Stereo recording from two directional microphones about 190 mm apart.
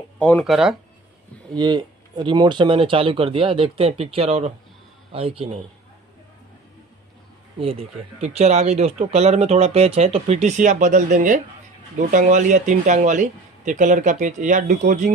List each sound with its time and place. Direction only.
0.2 s speech: 5° left (ahead or behind)
1.5 s speech: 20° right (ahead or behind)
7.6 s speech: 30° right (ahead or behind)